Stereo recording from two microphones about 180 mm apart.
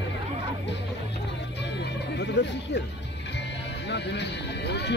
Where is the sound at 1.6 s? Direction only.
75° left (ahead or behind).